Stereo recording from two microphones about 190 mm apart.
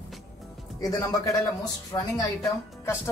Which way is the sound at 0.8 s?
20° left (ahead or behind).